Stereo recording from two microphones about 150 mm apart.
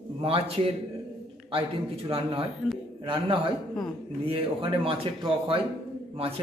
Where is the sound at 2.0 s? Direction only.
40° right (ahead or behind).